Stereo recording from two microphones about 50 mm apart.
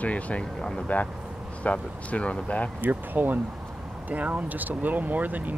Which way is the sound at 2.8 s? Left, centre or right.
Right.